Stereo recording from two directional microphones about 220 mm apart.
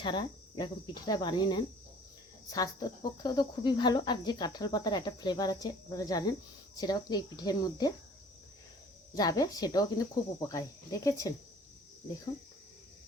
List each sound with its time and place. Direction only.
0.0 s speech: 20° left (ahead or behind)
9.1 s speech: 15° left (ahead or behind)